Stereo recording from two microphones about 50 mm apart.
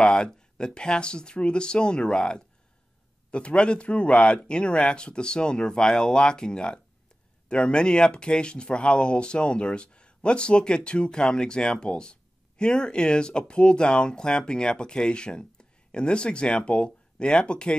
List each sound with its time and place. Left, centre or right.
0.0 s speech: centre